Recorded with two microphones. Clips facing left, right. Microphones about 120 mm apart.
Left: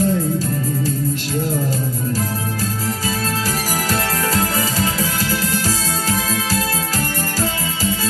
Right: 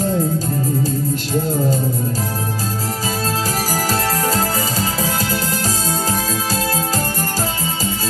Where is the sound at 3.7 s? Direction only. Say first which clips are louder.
Right 2 dB; 30° right (ahead or behind).